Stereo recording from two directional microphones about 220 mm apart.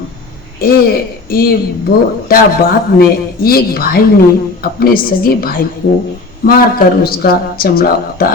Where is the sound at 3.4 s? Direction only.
45° left (ahead or behind).